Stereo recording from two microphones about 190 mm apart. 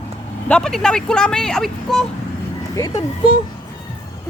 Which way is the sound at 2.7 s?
15° left (ahead or behind).